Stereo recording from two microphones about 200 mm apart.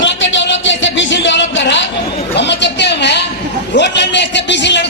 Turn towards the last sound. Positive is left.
turn(degrees=60)  # may be behind; listen again after turning